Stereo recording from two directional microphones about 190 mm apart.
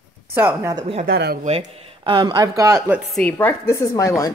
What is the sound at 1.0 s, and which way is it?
Speech, 55° right (ahead or behind).